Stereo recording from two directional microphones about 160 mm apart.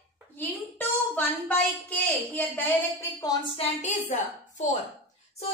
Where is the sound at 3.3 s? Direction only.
30° left (ahead or behind).